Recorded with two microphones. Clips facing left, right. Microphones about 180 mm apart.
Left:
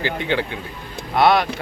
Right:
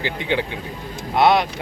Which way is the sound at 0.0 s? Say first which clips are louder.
Left 1 dB; 15° right (ahead or behind).